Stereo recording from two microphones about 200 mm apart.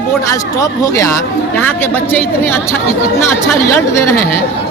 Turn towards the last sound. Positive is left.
turn(degrees=15)  # may be behind; listen again after turning